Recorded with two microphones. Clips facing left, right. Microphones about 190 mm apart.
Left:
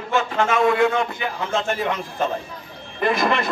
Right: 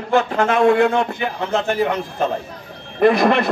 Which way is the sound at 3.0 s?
65° right (ahead or behind).